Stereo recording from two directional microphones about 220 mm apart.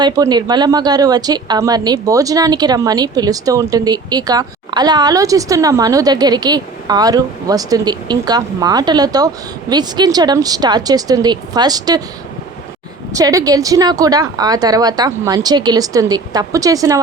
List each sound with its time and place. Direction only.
0.0 s a woman's voice: 20° right (ahead or behind)
13.1 s a woman's voice: 15° right (ahead or behind)